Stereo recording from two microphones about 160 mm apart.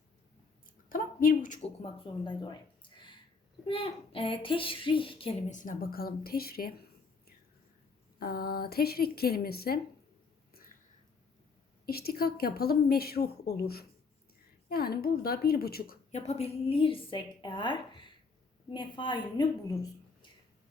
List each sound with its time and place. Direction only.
0.9 s a sound: 60° left (ahead or behind)
1.8 s a woman's voice: 30° left (ahead or behind)
5.5 s a woman's voice: 55° left (ahead or behind); by 6.7 s 70° left (ahead or behind)
8.2 s a woman's voice: 70° left (ahead or behind)
11.9 s a woman's voice: 75° left (ahead or behind)
16.1 s a woman's voice: 40° left (ahead or behind); by 19.9 s 25° left (ahead or behind)